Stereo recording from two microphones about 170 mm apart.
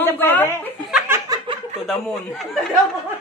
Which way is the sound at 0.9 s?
15° right (ahead or behind).